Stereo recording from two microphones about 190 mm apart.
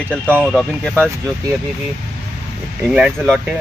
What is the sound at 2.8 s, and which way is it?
Speech, centre (ahead or behind).